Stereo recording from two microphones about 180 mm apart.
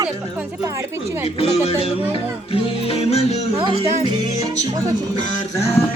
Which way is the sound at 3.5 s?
30° right (ahead or behind).